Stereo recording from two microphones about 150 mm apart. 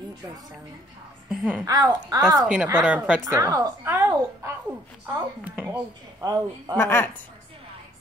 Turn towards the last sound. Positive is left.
turn(degrees=15)  # may be behind; listen again after turning